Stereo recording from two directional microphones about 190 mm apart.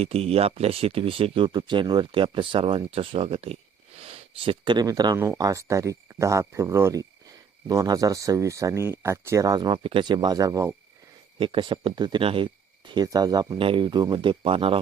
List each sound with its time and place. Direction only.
0.0 s speech: 30° right (ahead or behind)